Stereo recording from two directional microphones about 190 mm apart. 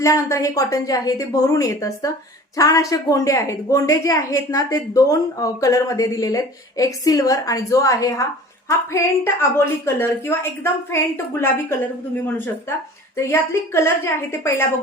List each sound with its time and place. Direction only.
0.0 s a woman's voice: 15° left (ahead or behind)
13.1 s a woman's voice: 15° left (ahead or behind)